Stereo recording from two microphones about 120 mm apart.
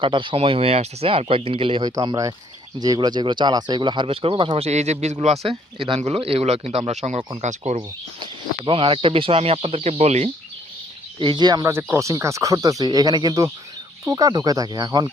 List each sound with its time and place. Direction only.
0.0 s speech: 45° right (ahead or behind)
2.0 s speech: 30° right (ahead or behind); by 7.2 s 65° right (ahead or behind)
7.4 s speech: 80° right
7.8 s speech: 40° right (ahead or behind); by 10.3 s 65° right (ahead or behind)
11.2 s speech: 40° right (ahead or behind)
11.6 s speech: 20° right (ahead or behind)